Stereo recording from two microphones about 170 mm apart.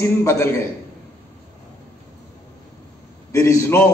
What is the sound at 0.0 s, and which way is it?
Speech, 15° left (ahead or behind).